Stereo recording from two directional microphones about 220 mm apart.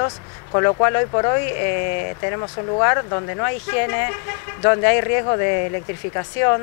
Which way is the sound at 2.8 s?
20° left (ahead or behind).